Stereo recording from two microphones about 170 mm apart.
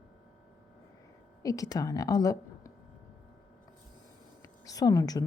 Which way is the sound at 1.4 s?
20° left (ahead or behind).